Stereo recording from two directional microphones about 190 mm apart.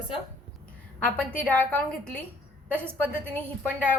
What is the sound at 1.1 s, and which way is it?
A woman's voice, 10° left (ahead or behind).